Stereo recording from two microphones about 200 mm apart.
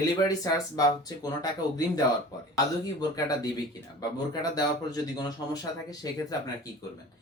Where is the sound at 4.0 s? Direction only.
20° left (ahead or behind).